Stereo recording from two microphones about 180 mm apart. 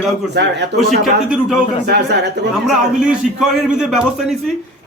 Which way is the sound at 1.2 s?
5° right (ahead or behind).